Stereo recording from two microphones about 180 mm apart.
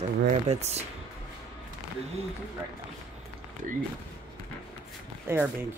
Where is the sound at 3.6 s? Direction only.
45° right (ahead or behind).